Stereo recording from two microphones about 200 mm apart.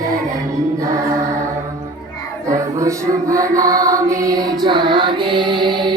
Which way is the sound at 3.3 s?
15° right (ahead or behind).